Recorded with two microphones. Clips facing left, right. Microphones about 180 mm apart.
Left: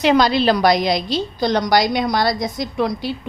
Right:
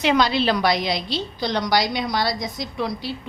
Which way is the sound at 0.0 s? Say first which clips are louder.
Left 4 dB; 40° left (ahead or behind).